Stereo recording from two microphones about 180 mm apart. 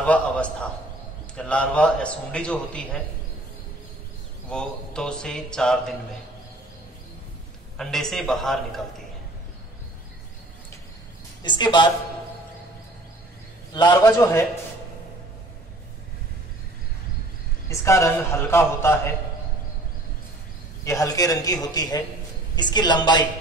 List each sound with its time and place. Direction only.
0.0 s a man's voice: 5° left (ahead or behind)
4.5 s a man's voice: 5° left (ahead or behind)
7.7 s a man's voice: centre (ahead or behind)
11.4 s a man's voice: 25° left (ahead or behind)
13.7 s a man's voice: 20° left (ahead or behind)
17.6 s a man's voice: 15° left (ahead or behind)
20.8 s a man's voice: 20° left (ahead or behind)